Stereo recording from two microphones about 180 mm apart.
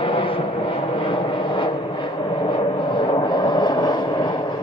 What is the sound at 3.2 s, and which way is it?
Vehicle, 25° left (ahead or behind).